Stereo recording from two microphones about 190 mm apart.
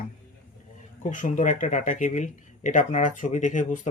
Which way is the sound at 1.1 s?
40° left (ahead or behind).